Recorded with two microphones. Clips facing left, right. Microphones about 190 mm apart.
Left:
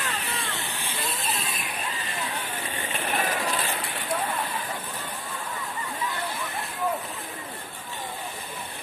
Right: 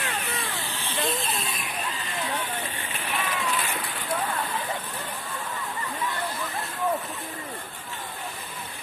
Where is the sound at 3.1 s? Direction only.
40° left (ahead or behind).